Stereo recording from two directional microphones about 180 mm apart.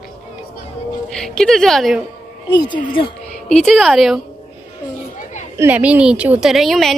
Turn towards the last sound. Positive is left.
turn(degrees=0)  # may be behind; listen again after turning